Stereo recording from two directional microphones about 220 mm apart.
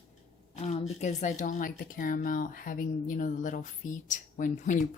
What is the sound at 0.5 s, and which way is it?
Speech, 30° left (ahead or behind).